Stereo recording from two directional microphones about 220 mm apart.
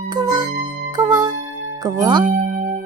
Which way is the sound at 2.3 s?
35° right (ahead or behind).